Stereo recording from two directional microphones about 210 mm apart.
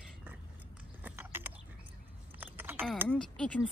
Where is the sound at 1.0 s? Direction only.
10° right (ahead or behind).